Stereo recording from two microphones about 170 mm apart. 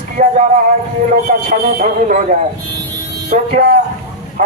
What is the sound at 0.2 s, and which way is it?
Speech, 50° right (ahead or behind).